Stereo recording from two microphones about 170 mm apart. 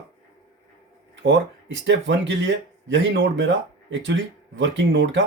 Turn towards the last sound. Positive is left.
turn(degrees=-90)